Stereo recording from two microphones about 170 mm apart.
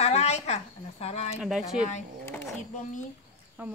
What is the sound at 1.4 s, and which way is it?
Speech, centre (ahead or behind).